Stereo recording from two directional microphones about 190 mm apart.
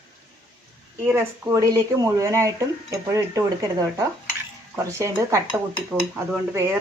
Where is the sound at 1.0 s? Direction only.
15° right (ahead or behind).